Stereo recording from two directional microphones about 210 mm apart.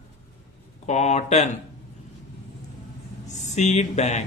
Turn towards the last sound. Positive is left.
turn(degrees=35)  # may be behind; listen again after turning